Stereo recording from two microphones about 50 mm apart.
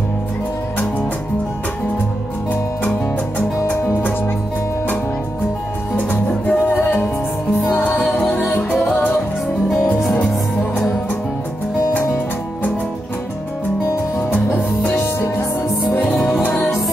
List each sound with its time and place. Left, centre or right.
5.9 s music: left
6.6 s music: left
7.7 s music: left
14.5 s music: left